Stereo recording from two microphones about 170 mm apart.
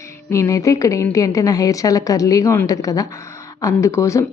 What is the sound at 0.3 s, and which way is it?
A woman's voice, 20° left (ahead or behind).